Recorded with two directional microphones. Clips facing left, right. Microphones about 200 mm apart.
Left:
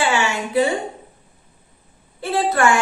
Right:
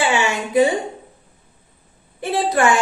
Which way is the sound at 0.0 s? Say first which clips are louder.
Right 1 dB; 15° right (ahead or behind).